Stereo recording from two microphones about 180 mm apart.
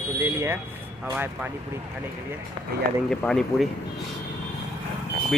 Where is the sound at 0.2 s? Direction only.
15° right (ahead or behind).